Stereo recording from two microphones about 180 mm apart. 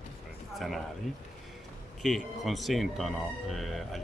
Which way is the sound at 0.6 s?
Centre (ahead or behind).